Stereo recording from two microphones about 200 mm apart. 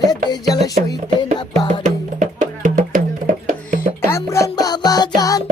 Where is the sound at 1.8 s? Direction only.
40° right (ahead or behind).